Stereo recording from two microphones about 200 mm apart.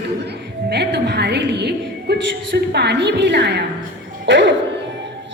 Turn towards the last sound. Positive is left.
turn(degrees=-65)  # may be behind; listen again after turning